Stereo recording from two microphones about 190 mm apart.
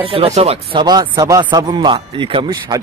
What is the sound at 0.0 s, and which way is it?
Speech, 30° right (ahead or behind).